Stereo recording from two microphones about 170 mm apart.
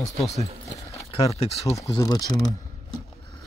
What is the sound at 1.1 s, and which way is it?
Speech, 40° left (ahead or behind).